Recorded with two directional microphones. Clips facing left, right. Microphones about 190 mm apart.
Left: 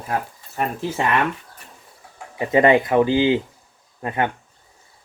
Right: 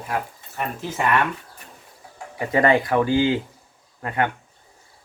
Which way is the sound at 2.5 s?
20° left (ahead or behind).